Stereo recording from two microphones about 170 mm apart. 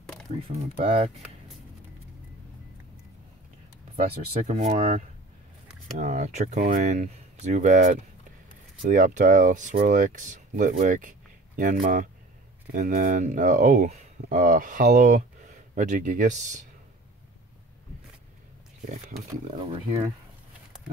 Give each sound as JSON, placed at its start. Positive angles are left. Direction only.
{"t": 0.6, "sound": "speech", "side_deg": -35}
{"t": 3.9, "sound": "speech", "side_deg": -40}
{"t": 18.9, "sound": "speech", "side_deg": -50}
{"t": 19.5, "sound": "speech", "side_deg": -35}